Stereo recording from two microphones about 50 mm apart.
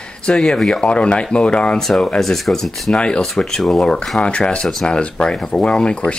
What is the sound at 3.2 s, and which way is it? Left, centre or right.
Speech, centre.